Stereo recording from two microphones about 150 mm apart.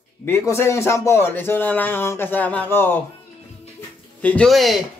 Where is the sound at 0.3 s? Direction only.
15° left (ahead or behind).